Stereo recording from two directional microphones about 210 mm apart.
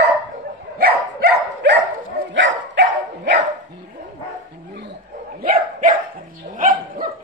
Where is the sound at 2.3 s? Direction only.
65° right (ahead or behind).